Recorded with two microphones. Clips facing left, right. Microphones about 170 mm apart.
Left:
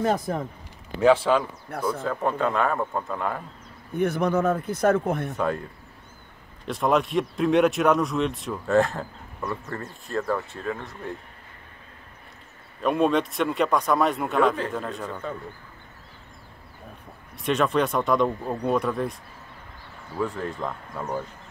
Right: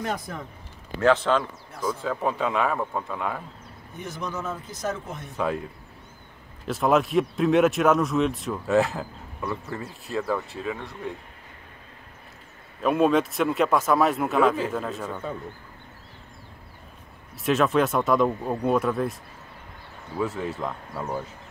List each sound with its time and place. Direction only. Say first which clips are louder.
0.0 s speech: left 6 dB; 40° left (ahead or behind)
1.0 s speech: left 2 dB; 10° left (ahead or behind)
2.0 s speech: even; 5° right (ahead or behind)
3.9 s speech: left 11 dB; 60° left (ahead or behind)
5.3 s speech: left 1 dB; centre (ahead or behind)
6.6 s speech: right 1 dB; centre (ahead or behind)
12.8 s speech: right 1 dB; centre (ahead or behind)
17.4 s speech: right 1 dB; centre (ahead or behind)
20.2 s speech: even; 5° right (ahead or behind)